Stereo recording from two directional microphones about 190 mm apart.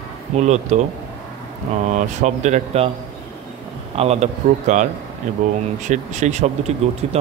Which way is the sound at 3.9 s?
35° right (ahead or behind).